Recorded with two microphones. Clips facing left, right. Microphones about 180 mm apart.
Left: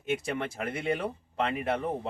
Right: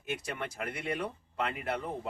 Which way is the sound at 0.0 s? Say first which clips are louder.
Left 6 dB; 25° left (ahead or behind).